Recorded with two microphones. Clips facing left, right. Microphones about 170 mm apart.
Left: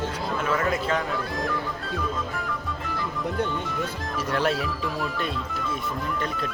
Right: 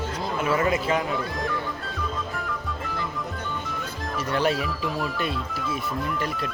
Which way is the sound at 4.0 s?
Centre (ahead or behind).